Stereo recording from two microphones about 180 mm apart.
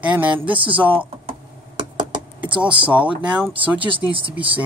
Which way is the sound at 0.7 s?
10° right (ahead or behind).